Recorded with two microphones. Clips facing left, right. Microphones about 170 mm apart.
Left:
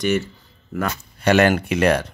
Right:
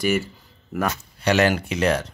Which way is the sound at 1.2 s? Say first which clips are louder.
Left 3 dB; 55° left (ahead or behind).